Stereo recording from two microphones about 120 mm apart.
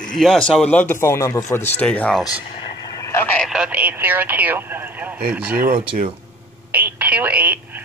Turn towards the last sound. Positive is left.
turn(degrees=-15)  # may be behind; listen again after turning